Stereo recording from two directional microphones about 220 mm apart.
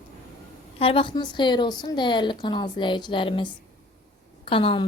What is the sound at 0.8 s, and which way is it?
A woman's voice, 25° left (ahead or behind).